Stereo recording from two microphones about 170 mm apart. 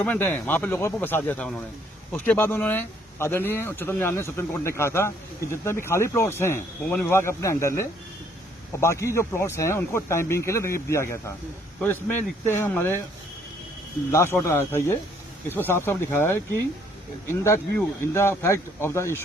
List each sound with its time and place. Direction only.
0.0 s speech: 10° left (ahead or behind)
14.1 s speech: 15° left (ahead or behind)